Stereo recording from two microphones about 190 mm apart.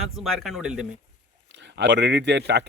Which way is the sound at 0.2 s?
Centre (ahead or behind).